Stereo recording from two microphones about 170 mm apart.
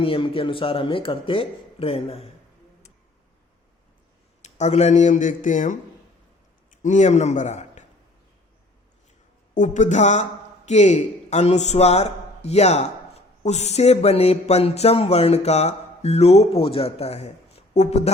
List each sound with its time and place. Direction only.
0.0 s speech: 30° left (ahead or behind)
4.4 s a man's voice: 40° left (ahead or behind)
9.6 s speech: 45° left (ahead or behind)